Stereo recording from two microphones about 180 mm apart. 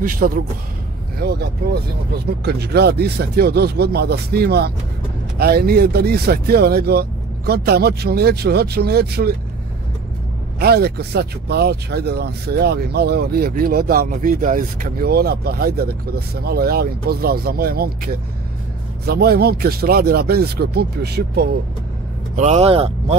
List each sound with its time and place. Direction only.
0.0 s speech: 50° right (ahead or behind)
1.2 s speech: 65° right (ahead or behind)
10.6 s speech: 60° right (ahead or behind)
22.3 s speech: 40° right (ahead or behind)